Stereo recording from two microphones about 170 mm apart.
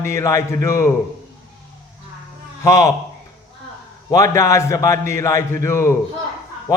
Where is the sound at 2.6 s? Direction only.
20° left (ahead or behind).